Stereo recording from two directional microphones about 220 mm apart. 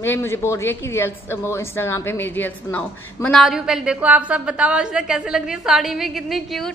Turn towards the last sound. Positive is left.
turn(degrees=0)  # may be behind; listen again after turning